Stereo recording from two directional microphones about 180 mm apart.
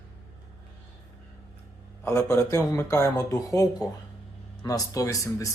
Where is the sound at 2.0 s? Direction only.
15° left (ahead or behind).